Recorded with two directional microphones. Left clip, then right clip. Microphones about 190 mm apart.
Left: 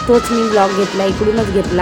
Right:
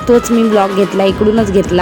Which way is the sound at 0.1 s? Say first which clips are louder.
Right 3 dB; 15° right (ahead or behind).